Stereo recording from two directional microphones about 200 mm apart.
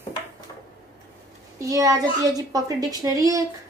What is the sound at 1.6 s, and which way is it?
A woman's voice, 15° right (ahead or behind).